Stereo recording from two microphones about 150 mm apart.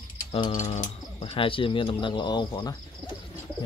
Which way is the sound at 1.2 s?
35° left (ahead or behind).